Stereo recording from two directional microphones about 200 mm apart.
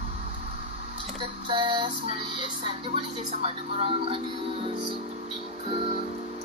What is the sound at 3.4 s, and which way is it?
Speech, 30° right (ahead or behind).